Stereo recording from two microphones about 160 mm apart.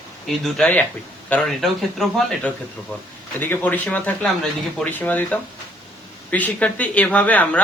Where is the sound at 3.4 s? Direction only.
10° left (ahead or behind).